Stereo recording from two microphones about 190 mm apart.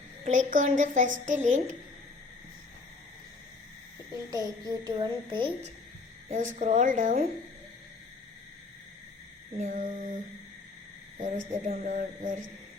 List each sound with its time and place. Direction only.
0.3 s speech: 40° right (ahead or behind)
4.3 s a sound: 20° right (ahead or behind)
6.3 s a woman's voice: 40° right (ahead or behind)
9.6 s a woman's voice: 45° right (ahead or behind)
11.2 s speech: 40° right (ahead or behind)